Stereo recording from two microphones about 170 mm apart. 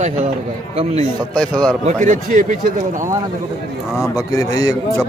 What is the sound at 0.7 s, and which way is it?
Speech, 35° right (ahead or behind).